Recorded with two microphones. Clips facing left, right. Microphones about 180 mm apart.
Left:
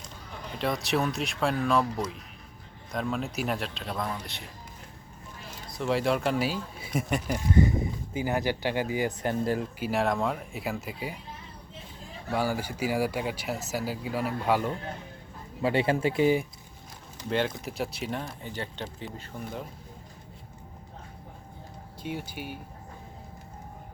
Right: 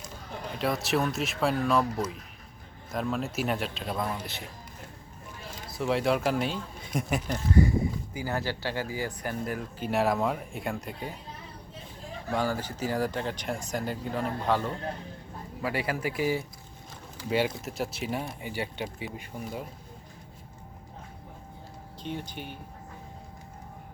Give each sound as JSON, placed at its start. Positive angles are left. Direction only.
{"t": 0.6, "sound": "speech", "side_deg": 0}
{"t": 5.6, "sound": "speech", "side_deg": 0}
{"t": 7.5, "sound": "speech", "side_deg": 20}
{"t": 9.8, "sound": "speech", "side_deg": 0}
{"t": 12.3, "sound": "speech", "side_deg": 10}
{"t": 15.6, "sound": "speech", "side_deg": 25}
{"t": 17.2, "sound": "speech", "side_deg": -5}
{"t": 22.0, "sound": "speech", "side_deg": 10}